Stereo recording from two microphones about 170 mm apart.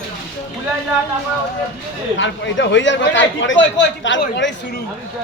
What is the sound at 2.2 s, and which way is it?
Speech, 90° left.